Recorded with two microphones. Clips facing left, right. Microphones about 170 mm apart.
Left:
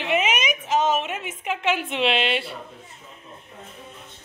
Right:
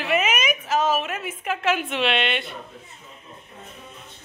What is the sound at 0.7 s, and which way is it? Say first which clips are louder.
Speech: left 1 dB; 20° left (ahead or behind).